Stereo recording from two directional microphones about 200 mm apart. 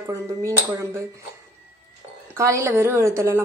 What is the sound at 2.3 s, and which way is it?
Speech, 15° right (ahead or behind).